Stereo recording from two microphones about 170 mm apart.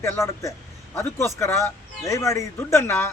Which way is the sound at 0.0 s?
15° left (ahead or behind).